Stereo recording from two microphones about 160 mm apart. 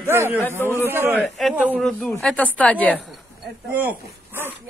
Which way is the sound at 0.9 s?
15° right (ahead or behind).